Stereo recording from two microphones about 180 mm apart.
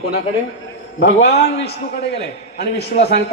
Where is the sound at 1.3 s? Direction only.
65° left (ahead or behind).